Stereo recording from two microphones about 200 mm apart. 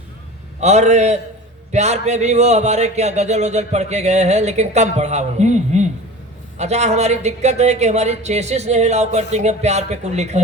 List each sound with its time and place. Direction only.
0.6 s speech: 35° right (ahead or behind)